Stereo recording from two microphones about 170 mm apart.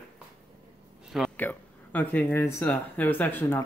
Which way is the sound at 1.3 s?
10° left (ahead or behind).